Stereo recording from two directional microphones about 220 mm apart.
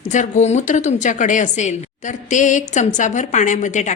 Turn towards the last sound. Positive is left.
turn(degrees=35)  # may be behind; listen again after turning